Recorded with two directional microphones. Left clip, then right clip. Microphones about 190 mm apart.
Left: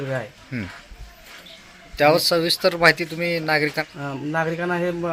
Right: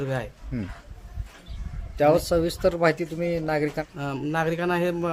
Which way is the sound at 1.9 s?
10° right (ahead or behind).